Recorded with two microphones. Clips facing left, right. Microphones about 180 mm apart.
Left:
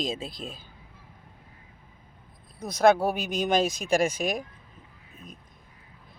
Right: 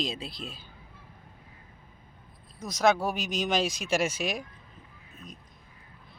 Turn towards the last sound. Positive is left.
turn(degrees=50)  # may be behind; listen again after turning